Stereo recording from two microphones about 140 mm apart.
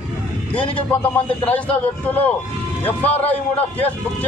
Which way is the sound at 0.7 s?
10° left (ahead or behind).